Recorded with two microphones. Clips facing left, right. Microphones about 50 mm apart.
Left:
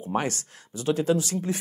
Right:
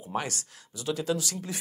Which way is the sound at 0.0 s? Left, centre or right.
Left.